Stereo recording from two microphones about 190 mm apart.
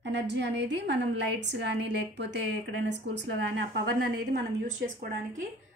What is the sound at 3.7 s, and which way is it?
Speech, 55° right (ahead or behind).